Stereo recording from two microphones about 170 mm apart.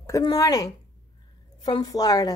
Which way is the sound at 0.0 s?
20° left (ahead or behind).